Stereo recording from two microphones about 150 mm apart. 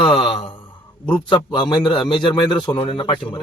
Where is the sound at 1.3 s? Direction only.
30° left (ahead or behind).